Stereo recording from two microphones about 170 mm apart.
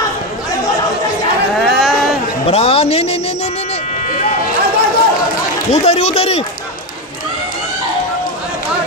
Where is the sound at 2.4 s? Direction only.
35° left (ahead or behind).